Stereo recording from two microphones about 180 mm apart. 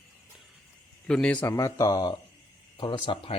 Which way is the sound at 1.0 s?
5° left (ahead or behind).